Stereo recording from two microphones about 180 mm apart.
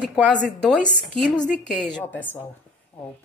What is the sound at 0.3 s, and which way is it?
A woman's voice, 5° left (ahead or behind).